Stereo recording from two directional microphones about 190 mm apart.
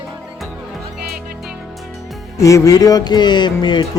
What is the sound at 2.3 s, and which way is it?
Music, 15° left (ahead or behind).